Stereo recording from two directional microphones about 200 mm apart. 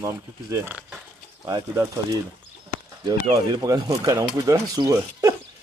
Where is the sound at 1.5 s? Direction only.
20° right (ahead or behind).